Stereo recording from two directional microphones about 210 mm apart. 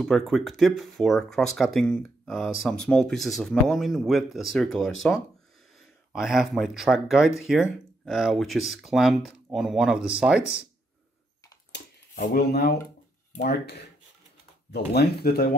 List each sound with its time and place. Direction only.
0.0 s speech: centre (ahead or behind)
6.1 s speech: centre (ahead or behind)
11.7 s a sound: 55° left (ahead or behind)
12.2 s speech: 50° left (ahead or behind)